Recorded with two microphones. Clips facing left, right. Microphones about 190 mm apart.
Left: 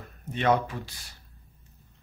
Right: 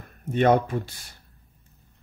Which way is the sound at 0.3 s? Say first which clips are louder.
Right 5 dB; 50° right (ahead or behind).